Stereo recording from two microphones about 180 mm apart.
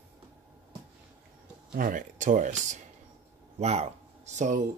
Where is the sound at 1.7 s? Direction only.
50° right (ahead or behind).